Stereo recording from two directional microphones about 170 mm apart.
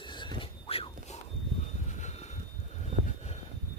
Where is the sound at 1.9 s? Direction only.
40° left (ahead or behind).